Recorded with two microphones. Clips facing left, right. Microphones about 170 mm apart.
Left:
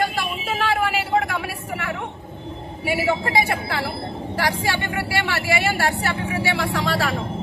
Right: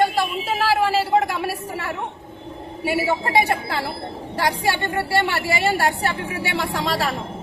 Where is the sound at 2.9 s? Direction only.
30° right (ahead or behind).